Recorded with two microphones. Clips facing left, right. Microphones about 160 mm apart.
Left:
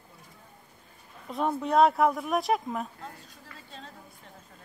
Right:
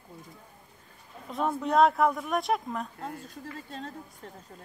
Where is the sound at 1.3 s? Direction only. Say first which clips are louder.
Left 1 dB; centre (ahead or behind).